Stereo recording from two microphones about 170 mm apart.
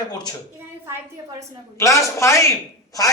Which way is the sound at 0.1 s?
25° left (ahead or behind).